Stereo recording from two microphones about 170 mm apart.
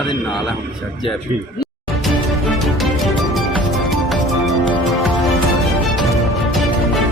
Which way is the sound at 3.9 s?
Centre (ahead or behind).